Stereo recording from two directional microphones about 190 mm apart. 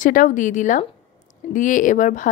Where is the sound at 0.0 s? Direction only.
45° left (ahead or behind).